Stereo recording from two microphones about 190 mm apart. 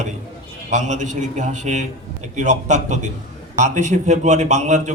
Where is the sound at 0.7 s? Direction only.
40° right (ahead or behind).